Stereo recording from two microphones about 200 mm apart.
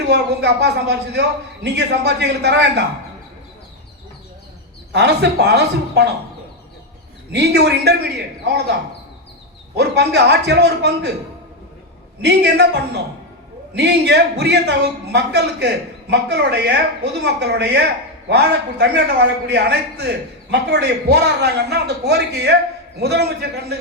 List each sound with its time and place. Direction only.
0.0 s a man's voice: 55° right (ahead or behind)
4.9 s a man's voice: 60° right (ahead or behind)
7.3 s a man's voice: 55° right (ahead or behind)
9.7 s a man's voice: 55° right (ahead or behind)
12.2 s a man's voice: 55° right (ahead or behind)